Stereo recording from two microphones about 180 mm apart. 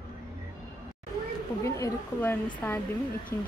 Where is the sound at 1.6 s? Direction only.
15° left (ahead or behind).